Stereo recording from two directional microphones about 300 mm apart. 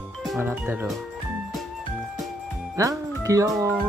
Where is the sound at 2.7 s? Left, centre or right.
Centre.